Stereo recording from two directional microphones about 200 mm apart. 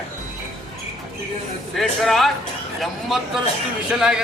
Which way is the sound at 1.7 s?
Centre (ahead or behind).